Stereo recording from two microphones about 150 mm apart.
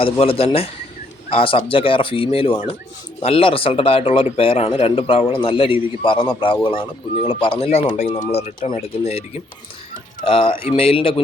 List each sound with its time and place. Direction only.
0.0 s speech: 40° left (ahead or behind)